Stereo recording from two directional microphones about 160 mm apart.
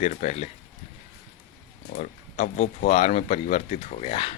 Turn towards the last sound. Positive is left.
turn(degrees=35)  # may be behind; listen again after turning